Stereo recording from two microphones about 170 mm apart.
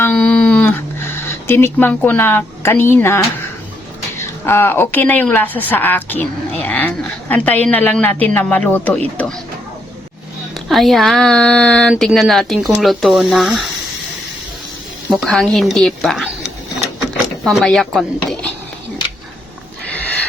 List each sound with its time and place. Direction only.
0.0 s a sound: 10° left (ahead or behind)
4.2 s a woman's voice: 15° left (ahead or behind)
10.7 s speech: centre (ahead or behind)
15.1 s speech: 5° left (ahead or behind)